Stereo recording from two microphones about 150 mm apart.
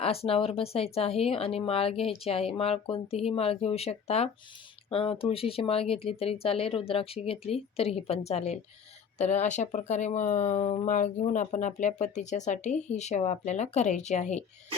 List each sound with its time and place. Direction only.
0.0 s speech: 40° left (ahead or behind)